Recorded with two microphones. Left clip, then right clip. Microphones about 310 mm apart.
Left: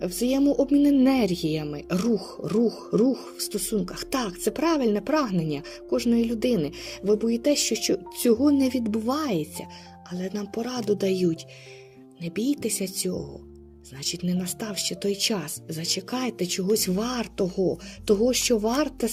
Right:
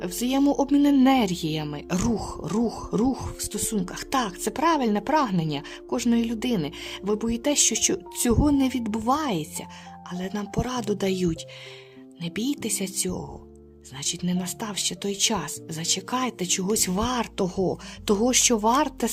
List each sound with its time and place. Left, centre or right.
0.0 s speech: centre
14.3 s speech: centre